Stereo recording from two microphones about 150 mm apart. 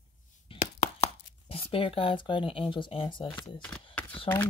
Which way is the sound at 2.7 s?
35° left (ahead or behind).